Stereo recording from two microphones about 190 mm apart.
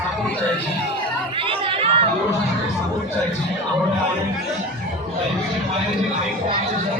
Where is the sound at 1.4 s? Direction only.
25° right (ahead or behind).